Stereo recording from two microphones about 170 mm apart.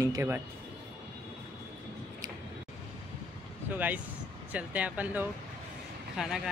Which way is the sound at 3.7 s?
10° right (ahead or behind).